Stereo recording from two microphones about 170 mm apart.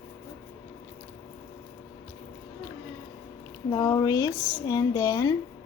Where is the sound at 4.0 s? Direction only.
25° left (ahead or behind).